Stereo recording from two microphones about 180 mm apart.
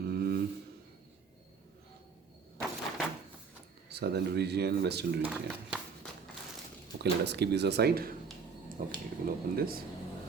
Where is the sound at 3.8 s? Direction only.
65° right (ahead or behind).